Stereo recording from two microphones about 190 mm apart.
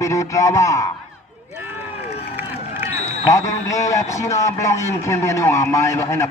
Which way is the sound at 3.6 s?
15° left (ahead or behind).